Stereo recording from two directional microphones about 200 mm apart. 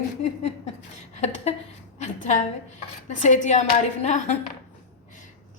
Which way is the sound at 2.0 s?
35° left (ahead or behind).